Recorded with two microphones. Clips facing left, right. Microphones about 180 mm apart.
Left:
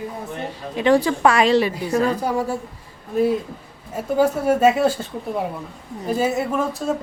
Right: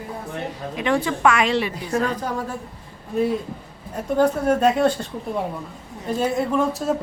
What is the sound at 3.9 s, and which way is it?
A woman's voice, 5° left (ahead or behind).